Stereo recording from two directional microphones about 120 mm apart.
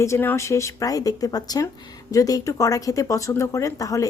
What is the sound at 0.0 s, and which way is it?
Speech, 20° left (ahead or behind).